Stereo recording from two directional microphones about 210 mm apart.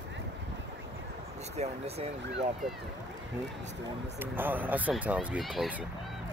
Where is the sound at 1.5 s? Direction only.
30° right (ahead or behind).